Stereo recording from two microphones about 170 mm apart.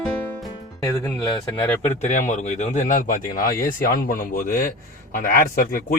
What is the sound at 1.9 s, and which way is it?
Speech, 45° left (ahead or behind).